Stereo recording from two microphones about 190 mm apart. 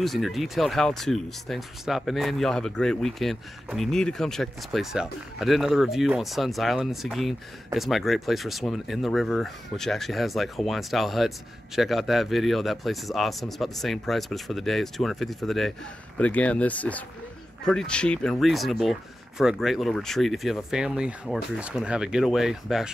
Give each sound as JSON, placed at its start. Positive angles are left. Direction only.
{"t": 0.0, "sound": "speech", "side_deg": 0}